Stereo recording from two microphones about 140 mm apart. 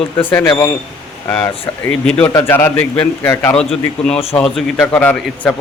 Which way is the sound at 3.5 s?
5° left (ahead or behind).